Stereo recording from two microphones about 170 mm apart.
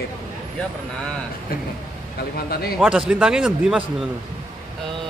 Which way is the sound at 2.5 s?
60° left (ahead or behind).